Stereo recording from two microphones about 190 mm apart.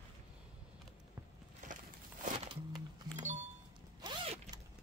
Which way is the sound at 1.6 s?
40° right (ahead or behind).